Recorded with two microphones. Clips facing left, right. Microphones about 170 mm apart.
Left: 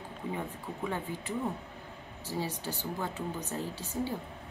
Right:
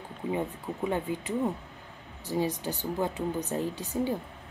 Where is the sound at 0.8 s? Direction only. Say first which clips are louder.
Right 6 dB; 15° right (ahead or behind).